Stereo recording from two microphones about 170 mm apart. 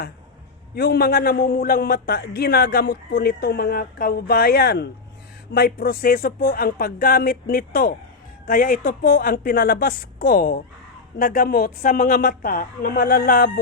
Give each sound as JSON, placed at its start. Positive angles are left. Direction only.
{"t": 0.8, "sound": "a man's voice", "side_deg": 65}